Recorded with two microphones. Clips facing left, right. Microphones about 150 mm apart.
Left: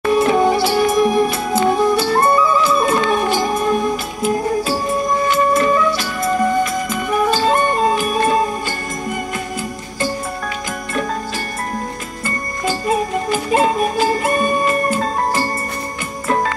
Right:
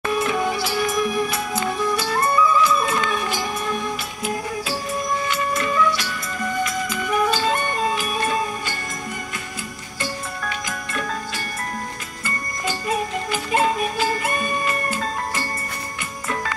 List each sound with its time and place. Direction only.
0.1 s music: 35° left (ahead or behind)
3.3 s music: 45° left (ahead or behind)
12.8 s music: 40° left (ahead or behind)